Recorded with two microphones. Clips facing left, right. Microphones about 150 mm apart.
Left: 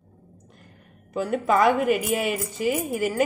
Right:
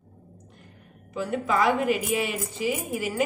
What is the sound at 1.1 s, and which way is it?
A woman's voice, 50° left (ahead or behind).